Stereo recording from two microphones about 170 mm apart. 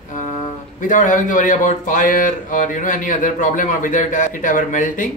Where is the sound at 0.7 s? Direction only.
50° left (ahead or behind).